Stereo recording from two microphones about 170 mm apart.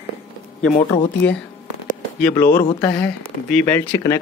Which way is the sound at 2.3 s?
15° left (ahead or behind).